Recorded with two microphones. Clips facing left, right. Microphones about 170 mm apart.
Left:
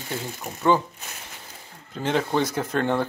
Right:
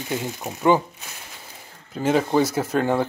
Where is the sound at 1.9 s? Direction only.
5° right (ahead or behind).